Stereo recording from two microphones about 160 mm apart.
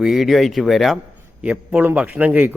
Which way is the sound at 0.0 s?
Centre (ahead or behind).